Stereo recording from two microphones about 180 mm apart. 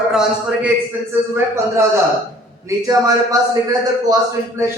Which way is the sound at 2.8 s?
20° right (ahead or behind).